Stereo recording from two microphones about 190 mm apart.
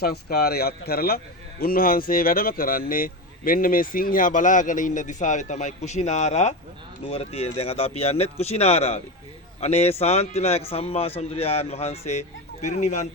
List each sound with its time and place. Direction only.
0.0 s a man's voice: 55° left (ahead or behind); by 13.1 s 35° left (ahead or behind)